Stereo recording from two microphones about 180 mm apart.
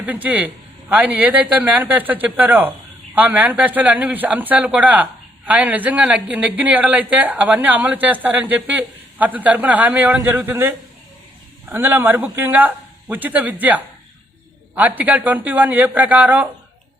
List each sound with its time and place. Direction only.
0.0 s speech: 10° right (ahead or behind)